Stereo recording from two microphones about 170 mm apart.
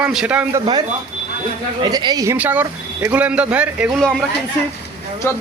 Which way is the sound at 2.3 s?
10° right (ahead or behind).